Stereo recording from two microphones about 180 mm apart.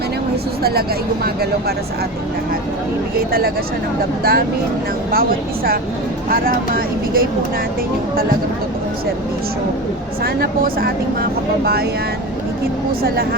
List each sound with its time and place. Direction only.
0.6 s speech: 60° right (ahead or behind)
4.2 s speech: 60° right (ahead or behind)
10.2 s speech: 55° right (ahead or behind)